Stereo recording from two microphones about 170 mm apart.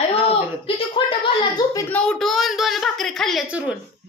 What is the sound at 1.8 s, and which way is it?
A woman's voice, 5° left (ahead or behind).